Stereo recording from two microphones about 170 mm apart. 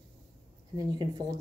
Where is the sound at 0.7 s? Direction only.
25° right (ahead or behind).